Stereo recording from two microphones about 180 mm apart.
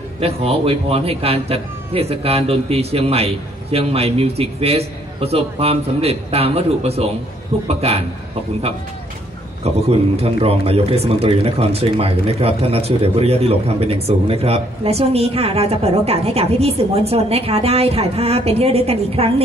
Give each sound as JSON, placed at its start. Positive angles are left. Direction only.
{"t": 0.2, "sound": "speech", "side_deg": -35}
{"t": 9.8, "sound": "speech", "side_deg": -35}